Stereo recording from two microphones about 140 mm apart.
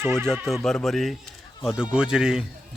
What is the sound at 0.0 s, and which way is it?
A man's voice, 5° left (ahead or behind).